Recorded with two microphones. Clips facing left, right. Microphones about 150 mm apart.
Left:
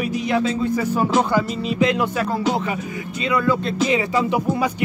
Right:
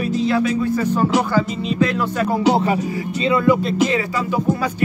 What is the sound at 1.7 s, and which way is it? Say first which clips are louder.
Music: even; 20° left (ahead or behind).